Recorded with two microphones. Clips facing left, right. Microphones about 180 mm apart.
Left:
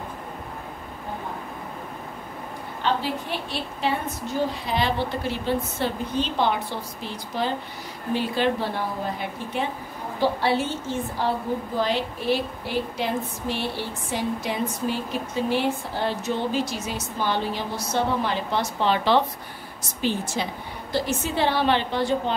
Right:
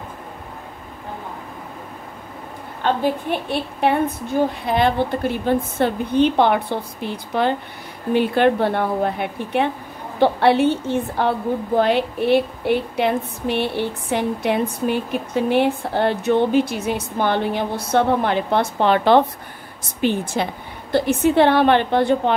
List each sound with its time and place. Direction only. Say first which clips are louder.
2.8 s a woman's voice: right 6 dB; 55° right (ahead or behind)